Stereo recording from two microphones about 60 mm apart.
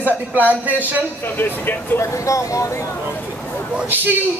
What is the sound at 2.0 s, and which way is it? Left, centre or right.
Speech, left.